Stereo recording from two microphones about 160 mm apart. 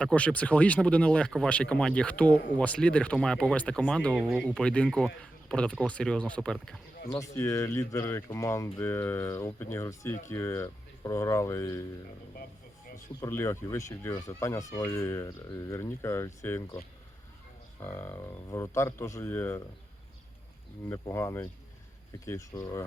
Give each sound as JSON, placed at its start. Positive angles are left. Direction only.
{"t": 0.0, "sound": "speech", "side_deg": 5}
{"t": 4.4, "sound": "speech", "side_deg": 5}
{"t": 7.3, "sound": "speech", "side_deg": 15}
{"t": 13.1, "sound": "speech", "side_deg": 20}
{"t": 17.7, "sound": "speech", "side_deg": 15}
{"t": 21.0, "sound": "speech", "side_deg": 20}